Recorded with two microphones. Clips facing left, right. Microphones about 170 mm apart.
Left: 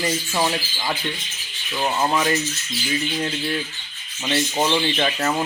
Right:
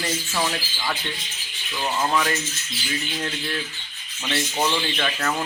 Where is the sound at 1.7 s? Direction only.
25° left (ahead or behind).